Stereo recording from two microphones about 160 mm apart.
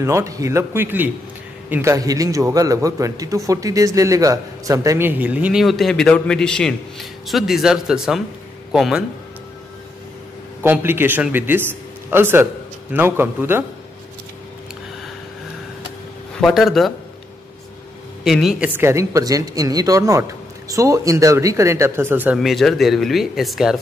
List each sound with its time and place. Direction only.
0.0 s a man's voice: 20° right (ahead or behind); by 9.0 s centre (ahead or behind)
10.6 s a man's voice: 15° right (ahead or behind)
16.3 s speech: centre (ahead or behind)
18.2 s speech: centre (ahead or behind)
22.4 s speech: centre (ahead or behind)